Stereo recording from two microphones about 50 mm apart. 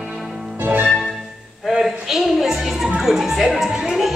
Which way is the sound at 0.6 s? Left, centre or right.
Right.